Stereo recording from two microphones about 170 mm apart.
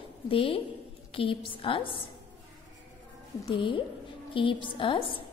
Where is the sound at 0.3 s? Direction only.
30° left (ahead or behind).